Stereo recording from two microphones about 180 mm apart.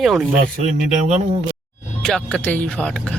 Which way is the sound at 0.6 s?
40° right (ahead or behind).